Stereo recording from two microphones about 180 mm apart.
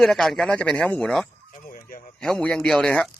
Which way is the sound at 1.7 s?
50° left (ahead or behind).